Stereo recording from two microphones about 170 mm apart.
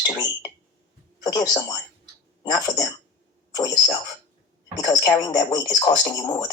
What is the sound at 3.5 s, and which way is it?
Speech, 20° left (ahead or behind).